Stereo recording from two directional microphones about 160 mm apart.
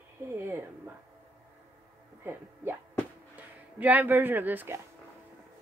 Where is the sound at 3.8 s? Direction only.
10° right (ahead or behind).